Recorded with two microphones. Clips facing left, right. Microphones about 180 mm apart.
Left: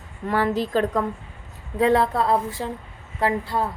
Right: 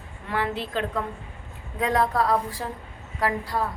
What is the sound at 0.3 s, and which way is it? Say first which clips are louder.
Speech: left 6 dB; 40° left (ahead or behind).